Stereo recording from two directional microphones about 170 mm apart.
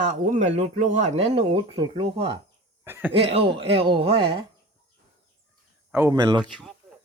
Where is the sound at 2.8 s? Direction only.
10° right (ahead or behind).